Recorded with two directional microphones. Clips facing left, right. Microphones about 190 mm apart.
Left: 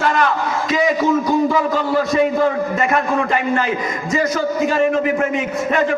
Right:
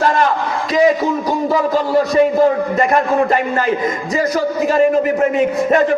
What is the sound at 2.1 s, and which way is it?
Speech, 35° right (ahead or behind).